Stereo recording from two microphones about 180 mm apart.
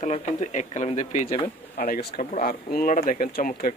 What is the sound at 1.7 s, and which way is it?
Speech, 55° left (ahead or behind).